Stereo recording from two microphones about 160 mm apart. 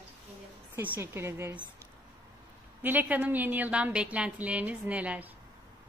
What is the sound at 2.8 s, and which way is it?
A woman's voice, 10° right (ahead or behind).